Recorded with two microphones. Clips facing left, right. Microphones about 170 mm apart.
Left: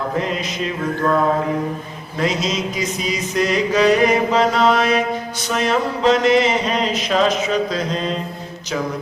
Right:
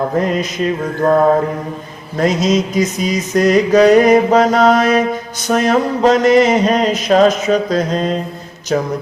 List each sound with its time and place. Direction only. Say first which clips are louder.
0.2 s mantra: right 6 dB; 45° right (ahead or behind)
2.1 s mantra: right 7 dB; 45° right (ahead or behind)